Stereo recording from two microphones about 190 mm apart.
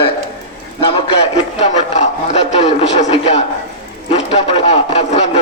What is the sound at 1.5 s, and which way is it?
A man's voice, 35° left (ahead or behind).